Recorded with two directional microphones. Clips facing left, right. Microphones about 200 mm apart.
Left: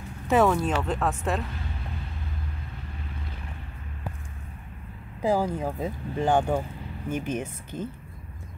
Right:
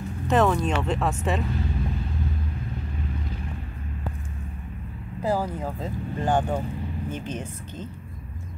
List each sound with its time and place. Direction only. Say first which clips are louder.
0.3 s speech: even; 5° left (ahead or behind)
5.2 s speech: left 2 dB; 15° left (ahead or behind)